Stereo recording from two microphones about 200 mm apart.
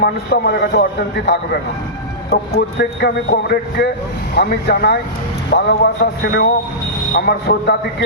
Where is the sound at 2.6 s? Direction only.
55° left (ahead or behind).